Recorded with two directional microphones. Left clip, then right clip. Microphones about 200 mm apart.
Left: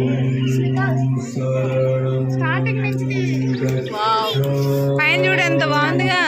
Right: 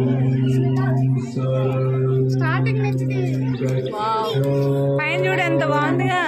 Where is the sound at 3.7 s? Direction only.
Centre (ahead or behind).